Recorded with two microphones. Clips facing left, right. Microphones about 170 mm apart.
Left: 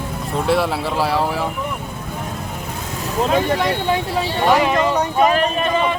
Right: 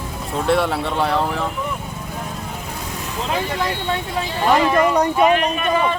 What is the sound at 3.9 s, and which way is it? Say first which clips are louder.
Speech: left 4 dB; 35° left (ahead or behind).